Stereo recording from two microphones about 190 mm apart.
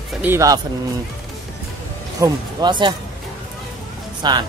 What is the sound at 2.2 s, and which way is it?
Speech, 25° right (ahead or behind).